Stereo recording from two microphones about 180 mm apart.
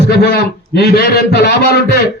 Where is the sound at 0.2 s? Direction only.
65° left (ahead or behind).